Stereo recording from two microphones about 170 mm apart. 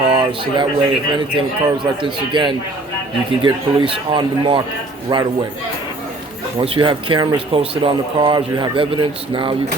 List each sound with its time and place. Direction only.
0.1 s speech: 30° right (ahead or behind)
6.6 s speech: 30° right (ahead or behind)